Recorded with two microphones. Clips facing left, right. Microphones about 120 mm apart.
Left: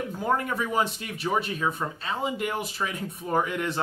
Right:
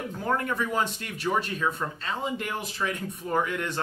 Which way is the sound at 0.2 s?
10° left (ahead or behind).